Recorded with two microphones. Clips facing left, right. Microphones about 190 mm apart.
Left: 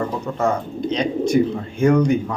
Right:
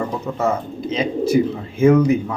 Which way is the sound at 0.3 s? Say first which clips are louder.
Even; 5° right (ahead or behind).